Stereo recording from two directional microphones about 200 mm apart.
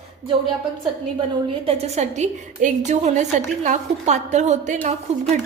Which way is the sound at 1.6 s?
30° right (ahead or behind).